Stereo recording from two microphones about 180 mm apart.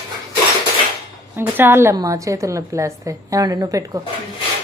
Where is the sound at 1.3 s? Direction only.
10° right (ahead or behind).